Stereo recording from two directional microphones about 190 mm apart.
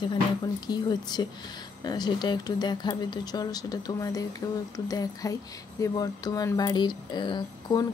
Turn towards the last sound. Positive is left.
turn(degrees=25)  # may be behind; listen again after turning